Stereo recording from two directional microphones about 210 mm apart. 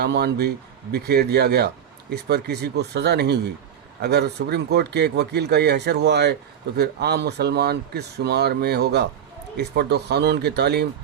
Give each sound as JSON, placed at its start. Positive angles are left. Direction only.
{"t": 0.0, "sound": "speech", "side_deg": -50}